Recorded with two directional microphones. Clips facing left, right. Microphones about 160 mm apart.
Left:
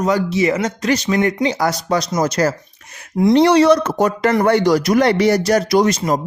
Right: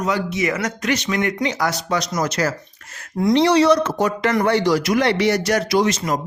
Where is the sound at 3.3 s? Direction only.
50° left (ahead or behind).